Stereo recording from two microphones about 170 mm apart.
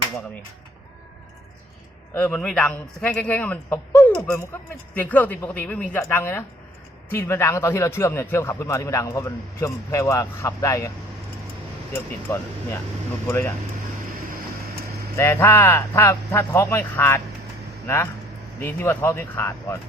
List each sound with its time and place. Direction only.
2.1 s speech: 10° left (ahead or behind)
11.9 s speech: 15° left (ahead or behind)
15.2 s speech: 15° left (ahead or behind)